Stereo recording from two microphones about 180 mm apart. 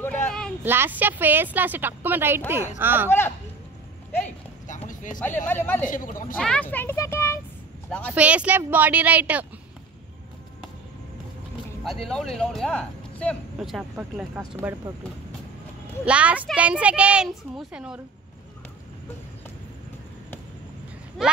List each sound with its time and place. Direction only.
0.0 s a sound: 10° left (ahead or behind)
0.7 s a woman's voice: 10° right (ahead or behind)
3.1 s speech: 15° left (ahead or behind)
4.6 s clip-clop: 45° left (ahead or behind)
5.2 s speech: 10° left (ahead or behind)
5.9 s speech: 50° left (ahead or behind)
6.3 s speech: 5° left (ahead or behind)
8.1 s a woman's voice: 5° right (ahead or behind)
11.8 s a woman's voice: centre (ahead or behind)
16.1 s a woman's voice: 5° right (ahead or behind)
21.2 s speech: 5° left (ahead or behind)